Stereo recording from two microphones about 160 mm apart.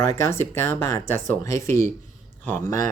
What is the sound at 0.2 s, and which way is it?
Speech, 15° left (ahead or behind).